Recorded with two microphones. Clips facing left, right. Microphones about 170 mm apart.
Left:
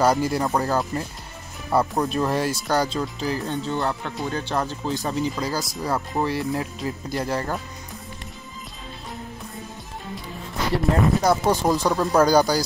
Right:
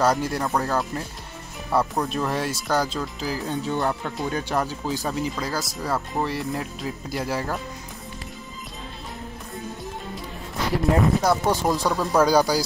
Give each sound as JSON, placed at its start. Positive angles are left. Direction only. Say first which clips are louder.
{"t": 0.0, "sound": "speech", "louder": "left 2 dB", "side_deg": 0}
{"t": 3.7, "sound": "speech", "louder": "right 1 dB", "side_deg": -15}
{"t": 4.6, "sound": "speech", "louder": "even", "side_deg": -5}
{"t": 10.8, "sound": "speech", "louder": "right 1 dB", "side_deg": 0}